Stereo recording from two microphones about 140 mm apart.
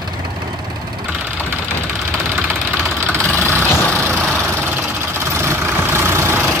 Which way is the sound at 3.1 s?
15° right (ahead or behind).